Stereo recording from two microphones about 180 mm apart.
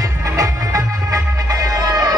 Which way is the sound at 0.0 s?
20° right (ahead or behind).